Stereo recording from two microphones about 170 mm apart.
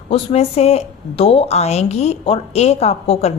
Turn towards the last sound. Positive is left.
turn(degrees=35)  # may be behind; listen again after turning